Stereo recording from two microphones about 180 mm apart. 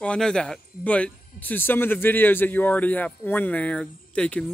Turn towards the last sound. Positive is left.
turn(degrees=5)  # may be behind; listen again after turning